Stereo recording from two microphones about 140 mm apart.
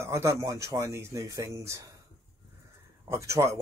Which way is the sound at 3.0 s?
20° right (ahead or behind).